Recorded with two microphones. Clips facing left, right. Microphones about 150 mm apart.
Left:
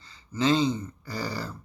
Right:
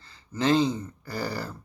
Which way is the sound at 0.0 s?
60° right (ahead or behind).